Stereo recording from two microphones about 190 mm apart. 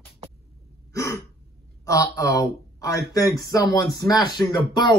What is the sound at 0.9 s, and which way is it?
Gasp, 15° left (ahead or behind).